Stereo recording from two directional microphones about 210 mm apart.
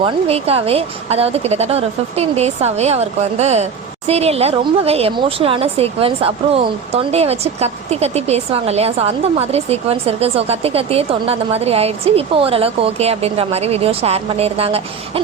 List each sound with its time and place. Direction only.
0.0 s a woman's voice: 30° right (ahead or behind)